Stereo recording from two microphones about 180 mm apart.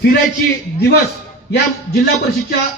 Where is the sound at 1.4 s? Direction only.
65° left (ahead or behind).